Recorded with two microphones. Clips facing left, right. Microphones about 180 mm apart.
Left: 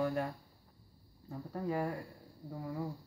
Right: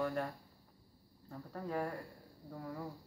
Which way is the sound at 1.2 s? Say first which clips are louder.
Left 5 dB; 10° left (ahead or behind).